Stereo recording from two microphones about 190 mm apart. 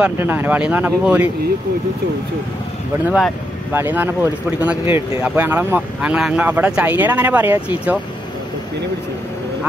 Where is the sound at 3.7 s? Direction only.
10° right (ahead or behind).